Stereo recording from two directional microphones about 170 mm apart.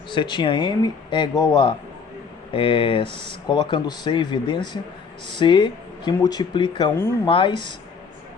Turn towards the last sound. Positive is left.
turn(degrees=30)  # may be behind; listen again after turning